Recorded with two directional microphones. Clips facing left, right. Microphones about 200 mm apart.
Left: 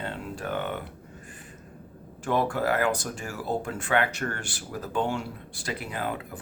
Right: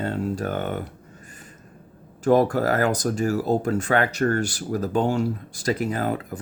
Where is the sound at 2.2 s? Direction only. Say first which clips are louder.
Right 7 dB; 40° right (ahead or behind).